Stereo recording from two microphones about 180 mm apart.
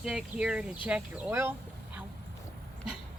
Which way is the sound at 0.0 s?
5° right (ahead or behind).